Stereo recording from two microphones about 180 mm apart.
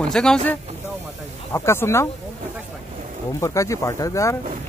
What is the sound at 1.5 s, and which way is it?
Speech, 15° left (ahead or behind).